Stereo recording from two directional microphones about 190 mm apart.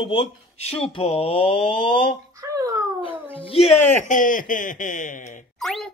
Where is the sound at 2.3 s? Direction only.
15° right (ahead or behind).